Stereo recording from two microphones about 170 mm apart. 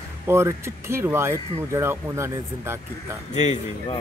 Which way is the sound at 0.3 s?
15° right (ahead or behind).